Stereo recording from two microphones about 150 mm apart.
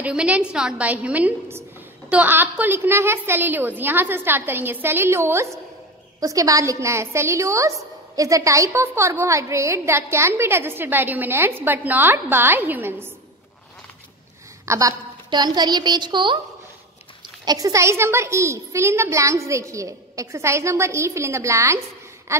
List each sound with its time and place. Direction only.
0.0 s a woman's voice: 5° right (ahead or behind)
14.7 s a child's voice: 20° right (ahead or behind)
17.5 s a child's voice: 25° right (ahead or behind)